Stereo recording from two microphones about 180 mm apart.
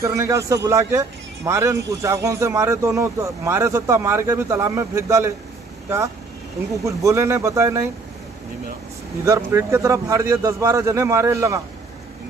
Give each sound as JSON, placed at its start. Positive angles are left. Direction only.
{"t": 0.0, "sound": "speech", "side_deg": -15}
{"t": 6.7, "sound": "speech", "side_deg": -20}
{"t": 9.2, "sound": "speech", "side_deg": -15}